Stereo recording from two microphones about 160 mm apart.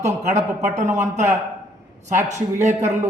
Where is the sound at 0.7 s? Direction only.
45° right (ahead or behind).